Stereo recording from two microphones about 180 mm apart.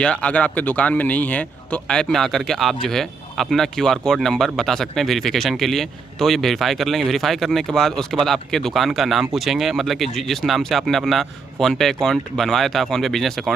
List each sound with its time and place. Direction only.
0.0 s speech: 5° left (ahead or behind)